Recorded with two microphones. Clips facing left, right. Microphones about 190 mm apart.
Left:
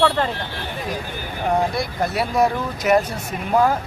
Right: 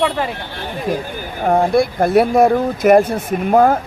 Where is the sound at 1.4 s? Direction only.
55° right (ahead or behind).